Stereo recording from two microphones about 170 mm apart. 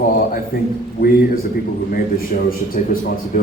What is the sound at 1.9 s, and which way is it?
Speech, 60° left (ahead or behind).